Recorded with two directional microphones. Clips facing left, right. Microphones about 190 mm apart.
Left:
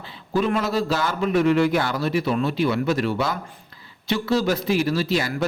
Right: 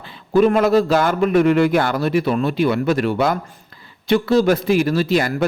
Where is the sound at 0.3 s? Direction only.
50° right (ahead or behind).